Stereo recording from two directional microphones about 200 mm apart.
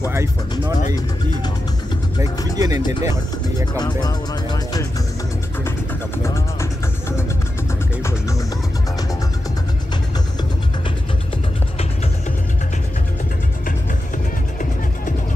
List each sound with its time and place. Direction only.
2.5 s speech: 20° right (ahead or behind)
3.7 s speech: 20° left (ahead or behind)
6.2 s vehicle: 15° left (ahead or behind)
8.0 s music: 15° left (ahead or behind)
13.7 s music: 40° left (ahead or behind)